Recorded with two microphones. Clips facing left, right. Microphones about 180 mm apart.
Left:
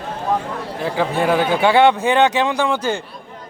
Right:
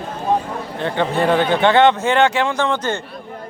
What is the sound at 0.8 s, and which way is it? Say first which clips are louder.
Speech: right 1 dB; 5° left (ahead or behind).